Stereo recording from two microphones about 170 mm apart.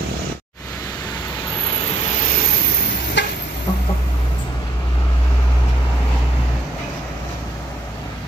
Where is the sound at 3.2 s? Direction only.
90° left.